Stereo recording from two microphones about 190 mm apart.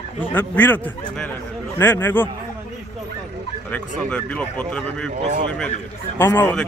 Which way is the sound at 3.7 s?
5° left (ahead or behind).